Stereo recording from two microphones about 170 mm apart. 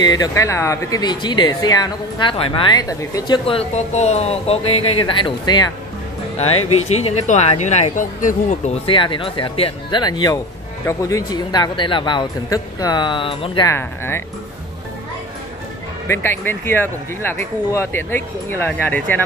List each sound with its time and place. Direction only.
0.0 s speech: 20° left (ahead or behind)
3.4 s speech: 35° left (ahead or behind)
6.3 s speech: 35° left (ahead or behind)
8.8 s speech: 30° left (ahead or behind)
13.7 s speech: 15° left (ahead or behind)
16.1 s speech: 15° left (ahead or behind)